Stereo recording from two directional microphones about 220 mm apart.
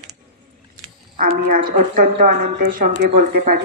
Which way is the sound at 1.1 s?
35° right (ahead or behind).